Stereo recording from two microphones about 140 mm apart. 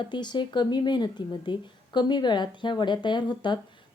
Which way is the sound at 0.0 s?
30° left (ahead or behind).